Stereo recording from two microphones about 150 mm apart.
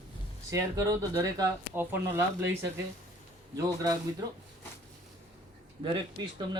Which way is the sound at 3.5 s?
20° right (ahead or behind).